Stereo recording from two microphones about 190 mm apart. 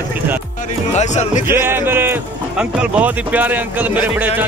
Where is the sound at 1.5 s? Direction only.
10° right (ahead or behind).